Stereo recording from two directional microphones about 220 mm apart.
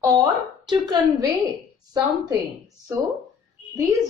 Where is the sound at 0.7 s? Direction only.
20° right (ahead or behind).